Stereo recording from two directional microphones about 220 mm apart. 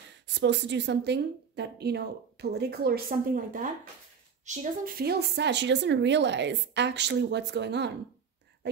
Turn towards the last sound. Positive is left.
turn(degrees=-50)  # may be behind; listen again after turning